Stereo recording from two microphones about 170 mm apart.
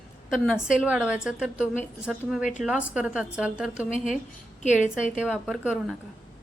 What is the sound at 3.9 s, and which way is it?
A woman's voice, 45° left (ahead or behind).